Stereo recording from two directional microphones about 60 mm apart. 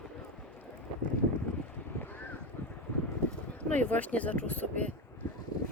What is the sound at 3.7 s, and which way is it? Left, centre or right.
Speech, left.